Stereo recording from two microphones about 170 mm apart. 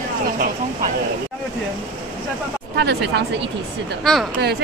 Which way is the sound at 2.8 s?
80° right.